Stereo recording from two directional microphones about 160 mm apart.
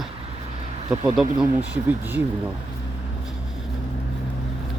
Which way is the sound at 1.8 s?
10° right (ahead or behind).